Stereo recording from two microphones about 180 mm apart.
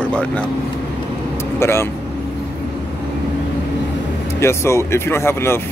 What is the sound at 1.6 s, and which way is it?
Speech, 15° left (ahead or behind).